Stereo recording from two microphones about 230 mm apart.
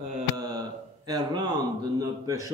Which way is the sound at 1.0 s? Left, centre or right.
Centre.